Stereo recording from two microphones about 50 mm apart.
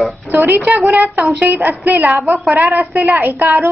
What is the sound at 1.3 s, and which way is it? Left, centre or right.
A woman's voice, right.